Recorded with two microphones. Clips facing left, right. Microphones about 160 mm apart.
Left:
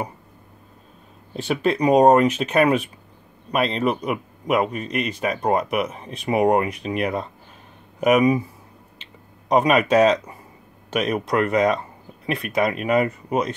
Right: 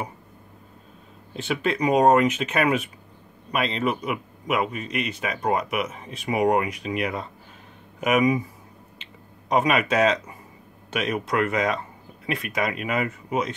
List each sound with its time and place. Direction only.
1.3 s speech: 40° left (ahead or behind)
9.5 s speech: 40° left (ahead or behind)